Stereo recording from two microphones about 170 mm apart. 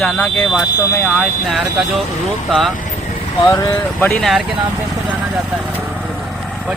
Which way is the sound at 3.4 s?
25° left (ahead or behind).